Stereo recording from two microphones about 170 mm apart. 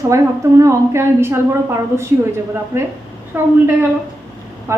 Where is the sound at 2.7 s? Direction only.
15° right (ahead or behind).